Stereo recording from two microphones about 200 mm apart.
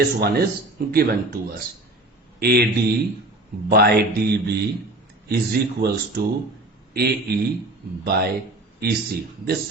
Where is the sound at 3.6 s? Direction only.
50° right (ahead or behind).